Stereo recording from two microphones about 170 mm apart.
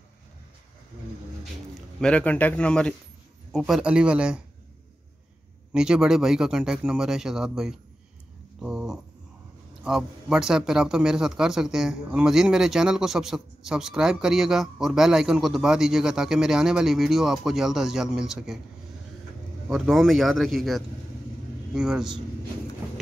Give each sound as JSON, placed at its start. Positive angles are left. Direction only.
{"t": 2.0, "sound": "speech", "side_deg": 5}
{"t": 5.7, "sound": "speech", "side_deg": -5}
{"t": 8.5, "sound": "dog", "side_deg": 0}
{"t": 9.8, "sound": "speech", "side_deg": -5}
{"t": 19.7, "sound": "speech", "side_deg": 0}